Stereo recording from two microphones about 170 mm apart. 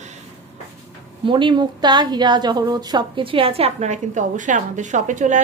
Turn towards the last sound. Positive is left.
turn(degrees=-45)  # may be behind; listen again after turning